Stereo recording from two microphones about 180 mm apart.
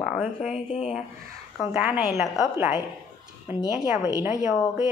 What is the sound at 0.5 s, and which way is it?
Speech, 40° left (ahead or behind).